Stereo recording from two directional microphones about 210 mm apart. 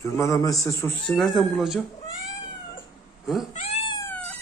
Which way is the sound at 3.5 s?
30° left (ahead or behind).